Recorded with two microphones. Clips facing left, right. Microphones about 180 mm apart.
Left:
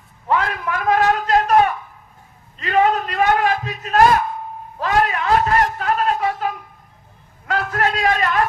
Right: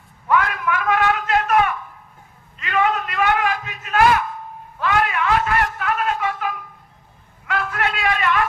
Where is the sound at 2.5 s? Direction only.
35° left (ahead or behind).